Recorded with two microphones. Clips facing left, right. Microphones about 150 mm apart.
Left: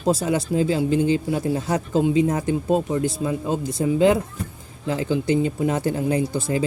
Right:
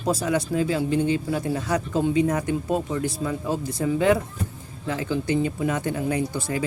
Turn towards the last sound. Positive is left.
turn(degrees=25)  # may be behind; listen again after turning